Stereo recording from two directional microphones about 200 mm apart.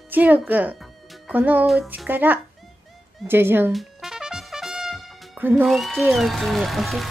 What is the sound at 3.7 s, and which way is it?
Trumpet, centre (ahead or behind).